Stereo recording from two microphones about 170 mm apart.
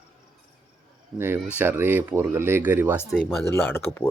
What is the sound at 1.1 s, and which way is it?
Speech, 15° right (ahead or behind).